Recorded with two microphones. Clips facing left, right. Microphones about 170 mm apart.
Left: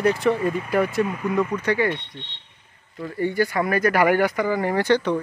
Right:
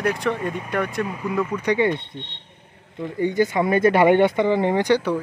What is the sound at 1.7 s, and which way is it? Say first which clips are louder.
Speech: right 4 dB; 20° right (ahead or behind).